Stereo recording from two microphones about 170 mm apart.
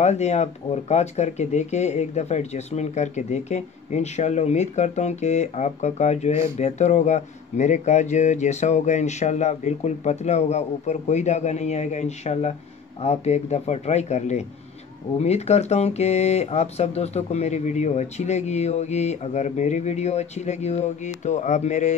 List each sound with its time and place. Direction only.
0.0 s speech: 40° left (ahead or behind)